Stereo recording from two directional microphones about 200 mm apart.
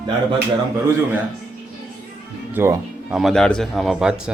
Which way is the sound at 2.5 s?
15° right (ahead or behind).